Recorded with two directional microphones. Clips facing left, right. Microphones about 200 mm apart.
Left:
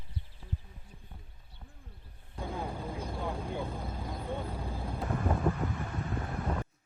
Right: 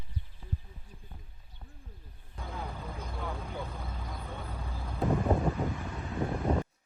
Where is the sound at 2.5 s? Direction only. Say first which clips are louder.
Left 2 dB; 30° left (ahead or behind).